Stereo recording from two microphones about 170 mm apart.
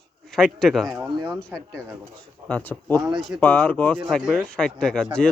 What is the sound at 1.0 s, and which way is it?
Speech, 20° right (ahead or behind).